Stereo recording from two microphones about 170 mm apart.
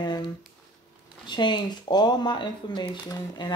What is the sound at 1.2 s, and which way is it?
Speech, 25° left (ahead or behind).